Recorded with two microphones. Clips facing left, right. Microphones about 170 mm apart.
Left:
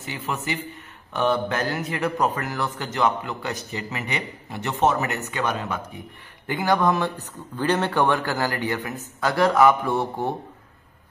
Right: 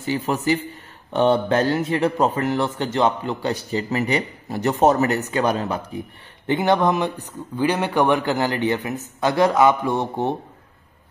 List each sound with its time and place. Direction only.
0.0 s speech: 35° right (ahead or behind)
6.4 s speech: 25° right (ahead or behind)